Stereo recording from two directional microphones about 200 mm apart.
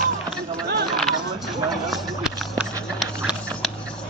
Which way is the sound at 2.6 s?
Centre (ahead or behind).